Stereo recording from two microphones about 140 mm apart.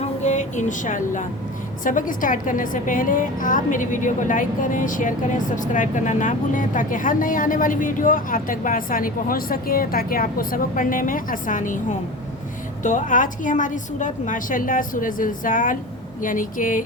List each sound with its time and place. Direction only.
0.2 s a woman's voice: 60° left (ahead or behind); by 16.8 s 75° left (ahead or behind)